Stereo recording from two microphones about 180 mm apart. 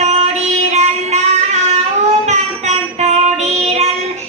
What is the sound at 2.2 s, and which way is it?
Music, 40° right (ahead or behind).